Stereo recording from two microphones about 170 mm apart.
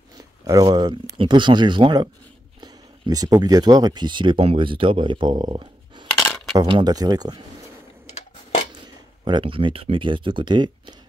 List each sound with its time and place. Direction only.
0.5 s speech: 25° right (ahead or behind)
6.1 s coin: 10° left (ahead or behind)
6.6 s speech: 25° right (ahead or behind)
9.2 s speech: 30° right (ahead or behind)